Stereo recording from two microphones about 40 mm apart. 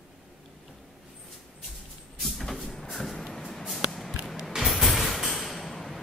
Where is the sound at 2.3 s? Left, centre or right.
Centre.